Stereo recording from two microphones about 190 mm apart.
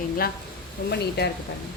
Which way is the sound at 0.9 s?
60° left (ahead or behind).